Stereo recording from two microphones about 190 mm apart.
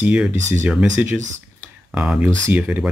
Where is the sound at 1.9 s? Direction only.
5° right (ahead or behind).